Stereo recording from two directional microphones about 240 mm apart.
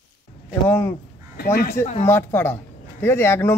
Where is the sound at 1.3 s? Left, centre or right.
Left.